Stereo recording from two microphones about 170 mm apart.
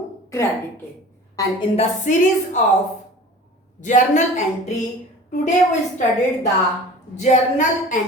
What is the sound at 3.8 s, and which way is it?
Speech, 45° left (ahead or behind).